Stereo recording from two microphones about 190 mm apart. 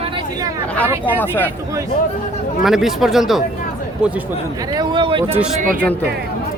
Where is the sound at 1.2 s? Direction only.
10° left (ahead or behind).